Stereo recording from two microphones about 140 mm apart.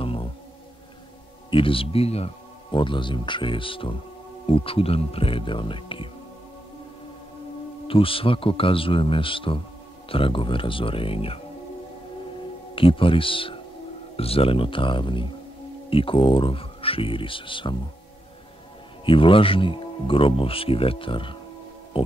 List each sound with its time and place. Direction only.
0.0 s music: 40° left (ahead or behind)
1.5 s speech: 40° left (ahead or behind)
7.9 s speech: 40° left (ahead or behind)
12.7 s speech: 40° left (ahead or behind)
19.0 s speech: 40° left (ahead or behind)
21.9 s music: 40° left (ahead or behind)